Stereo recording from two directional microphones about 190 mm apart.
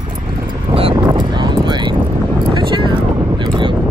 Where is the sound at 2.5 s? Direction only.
25° right (ahead or behind).